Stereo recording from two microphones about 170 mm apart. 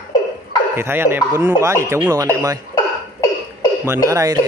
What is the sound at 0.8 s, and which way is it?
Speech, 15° right (ahead or behind).